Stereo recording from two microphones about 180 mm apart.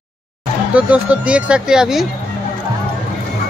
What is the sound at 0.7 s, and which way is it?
Speech, 5° right (ahead or behind).